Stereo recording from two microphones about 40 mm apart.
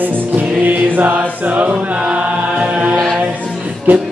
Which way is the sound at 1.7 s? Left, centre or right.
Right.